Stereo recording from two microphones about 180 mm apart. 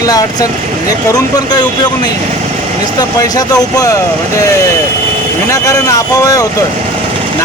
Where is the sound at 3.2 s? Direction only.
20° left (ahead or behind).